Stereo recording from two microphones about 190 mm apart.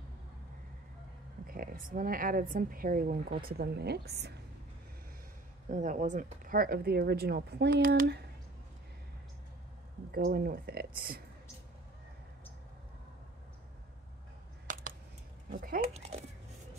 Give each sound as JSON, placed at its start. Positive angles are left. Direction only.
{"t": 1.4, "sound": "a woman's voice", "side_deg": -50}
{"t": 5.7, "sound": "a woman's voice", "side_deg": -40}
{"t": 10.1, "sound": "a woman's voice", "side_deg": -55}
{"t": 14.7, "sound": "computer keyboard", "side_deg": -45}